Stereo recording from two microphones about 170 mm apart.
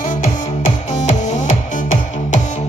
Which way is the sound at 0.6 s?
45° left (ahead or behind).